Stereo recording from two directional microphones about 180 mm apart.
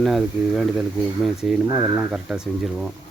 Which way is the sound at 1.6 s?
20° right (ahead or behind).